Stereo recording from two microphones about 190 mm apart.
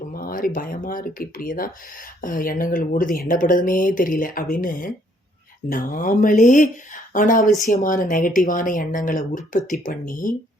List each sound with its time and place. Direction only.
0.1 s speech: 50° left (ahead or behind)